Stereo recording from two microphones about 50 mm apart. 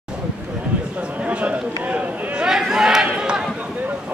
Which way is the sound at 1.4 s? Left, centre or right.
Right.